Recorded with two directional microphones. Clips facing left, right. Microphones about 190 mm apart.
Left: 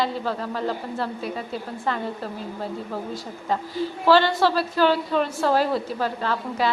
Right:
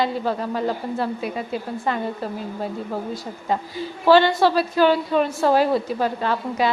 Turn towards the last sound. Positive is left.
turn(degrees=-15)  # may be behind; listen again after turning